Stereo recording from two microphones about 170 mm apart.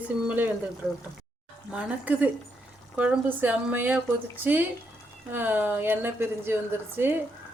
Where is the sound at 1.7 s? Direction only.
10° right (ahead or behind).